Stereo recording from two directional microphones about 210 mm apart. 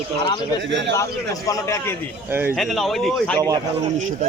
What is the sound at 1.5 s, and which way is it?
Speech, 15° left (ahead or behind).